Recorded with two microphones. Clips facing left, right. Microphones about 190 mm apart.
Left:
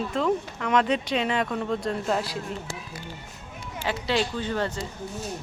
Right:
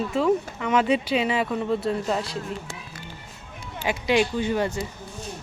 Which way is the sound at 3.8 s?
15° right (ahead or behind).